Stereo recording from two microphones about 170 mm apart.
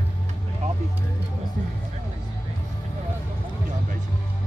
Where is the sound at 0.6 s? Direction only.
40° right (ahead or behind).